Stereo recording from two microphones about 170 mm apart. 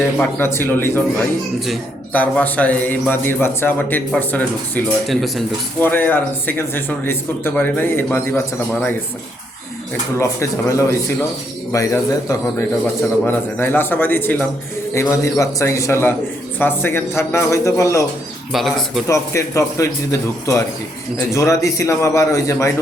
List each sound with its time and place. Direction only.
0.0 s a man's voice: 10° left (ahead or behind)
2.1 s a man's voice: 10° left (ahead or behind)
10.2 s a man's voice: 15° left (ahead or behind)
18.5 s speech: centre (ahead or behind)
19.0 s a man's voice: 20° left (ahead or behind)